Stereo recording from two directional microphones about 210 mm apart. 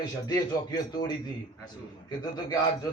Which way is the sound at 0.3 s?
20° left (ahead or behind).